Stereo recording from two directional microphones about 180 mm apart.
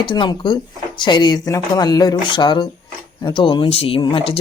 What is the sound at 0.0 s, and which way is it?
Speech, 25° left (ahead or behind).